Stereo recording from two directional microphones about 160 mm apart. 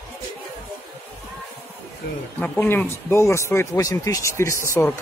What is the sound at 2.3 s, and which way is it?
Speech, 15° left (ahead or behind).